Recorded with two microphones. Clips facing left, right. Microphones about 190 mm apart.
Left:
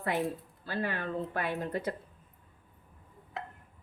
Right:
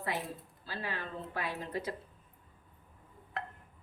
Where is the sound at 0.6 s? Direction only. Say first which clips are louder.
Left 7 dB; 55° left (ahead or behind).